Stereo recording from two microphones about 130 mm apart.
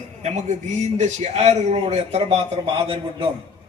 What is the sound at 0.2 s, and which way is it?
A man's voice, 60° right (ahead or behind).